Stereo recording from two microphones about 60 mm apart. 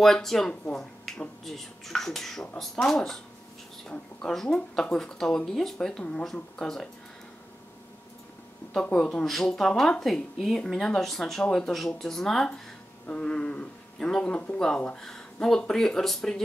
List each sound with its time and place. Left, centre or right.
0.0 s speech: centre
4.3 s speech: centre
8.8 s speech: centre
13.0 s speech: centre